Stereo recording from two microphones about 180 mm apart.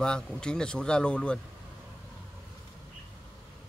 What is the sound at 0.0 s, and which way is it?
A man's voice, 5° left (ahead or behind).